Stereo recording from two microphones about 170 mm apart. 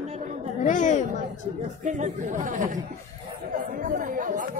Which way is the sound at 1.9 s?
45° right (ahead or behind).